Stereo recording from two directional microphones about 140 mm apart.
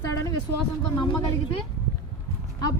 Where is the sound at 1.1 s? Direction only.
25° left (ahead or behind).